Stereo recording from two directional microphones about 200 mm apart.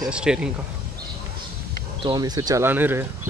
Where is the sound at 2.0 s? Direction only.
20° right (ahead or behind).